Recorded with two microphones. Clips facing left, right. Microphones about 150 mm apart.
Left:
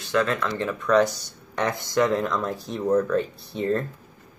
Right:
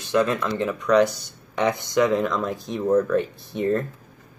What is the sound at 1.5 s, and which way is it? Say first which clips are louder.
Speech: right 2 dB; 20° right (ahead or behind).